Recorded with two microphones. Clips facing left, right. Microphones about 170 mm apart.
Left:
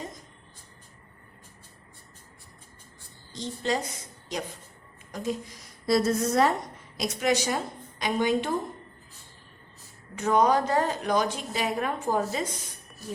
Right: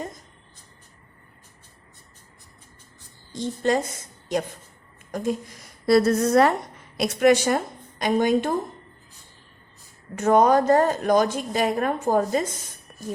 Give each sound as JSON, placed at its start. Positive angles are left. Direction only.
{"t": 3.3, "sound": "a woman's voice", "side_deg": -50}
{"t": 5.1, "sound": "a woman's voice", "side_deg": -50}
{"t": 5.8, "sound": "a woman's voice", "side_deg": -60}
{"t": 10.2, "sound": "a woman's voice", "side_deg": -50}